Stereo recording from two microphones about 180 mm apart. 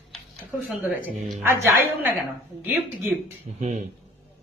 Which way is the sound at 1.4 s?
15° right (ahead or behind).